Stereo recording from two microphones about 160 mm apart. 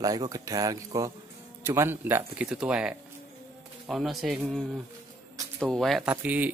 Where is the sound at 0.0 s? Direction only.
20° right (ahead or behind); by 4.4 s centre (ahead or behind).